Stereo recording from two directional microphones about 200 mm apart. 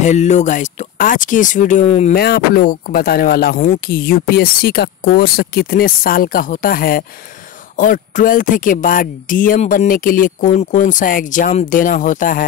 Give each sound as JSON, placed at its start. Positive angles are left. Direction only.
{"t": 0.0, "sound": "speech", "side_deg": 35}
{"t": 2.1, "sound": "speech", "side_deg": 50}